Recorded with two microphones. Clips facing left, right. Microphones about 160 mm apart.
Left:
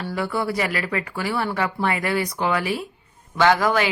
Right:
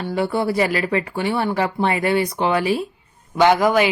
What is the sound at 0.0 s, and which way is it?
Speech, 25° right (ahead or behind).